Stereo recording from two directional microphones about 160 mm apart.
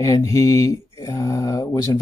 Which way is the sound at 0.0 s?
20° left (ahead or behind).